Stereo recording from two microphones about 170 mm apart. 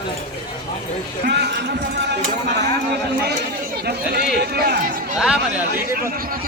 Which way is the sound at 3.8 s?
70° right (ahead or behind).